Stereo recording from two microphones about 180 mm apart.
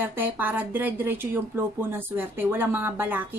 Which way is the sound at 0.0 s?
10° right (ahead or behind).